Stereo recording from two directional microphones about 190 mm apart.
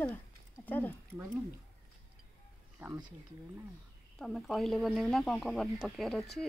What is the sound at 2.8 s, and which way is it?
Speech, 15° right (ahead or behind).